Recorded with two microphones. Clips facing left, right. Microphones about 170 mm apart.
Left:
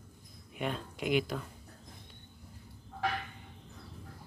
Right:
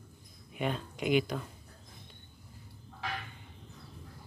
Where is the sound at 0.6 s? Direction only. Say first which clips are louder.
Right 2 dB; centre (ahead or behind).